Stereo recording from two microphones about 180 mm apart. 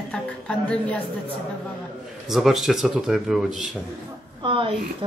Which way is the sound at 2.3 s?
Centre (ahead or behind).